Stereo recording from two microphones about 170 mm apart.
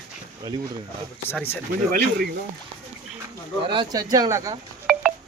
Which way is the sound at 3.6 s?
30° right (ahead or behind).